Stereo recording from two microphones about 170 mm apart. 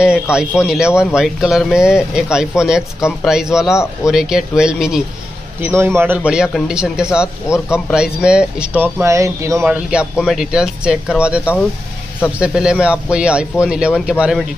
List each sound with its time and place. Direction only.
0.0 s speech: 5° right (ahead or behind)
5.6 s speech: 15° right (ahead or behind)
9.7 s speech: 5° right (ahead or behind)